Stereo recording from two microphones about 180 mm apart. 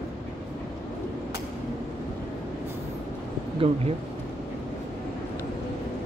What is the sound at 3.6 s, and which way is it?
Speech, 30° right (ahead or behind).